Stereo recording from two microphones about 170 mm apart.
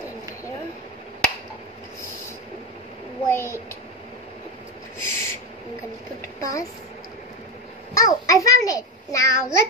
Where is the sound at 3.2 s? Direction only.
15° left (ahead or behind).